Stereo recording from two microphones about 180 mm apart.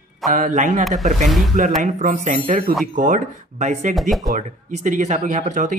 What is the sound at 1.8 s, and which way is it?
Speech, 50° right (ahead or behind).